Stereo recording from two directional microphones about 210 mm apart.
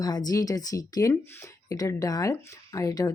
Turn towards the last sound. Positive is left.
turn(degrees=15)  # may be behind; listen again after turning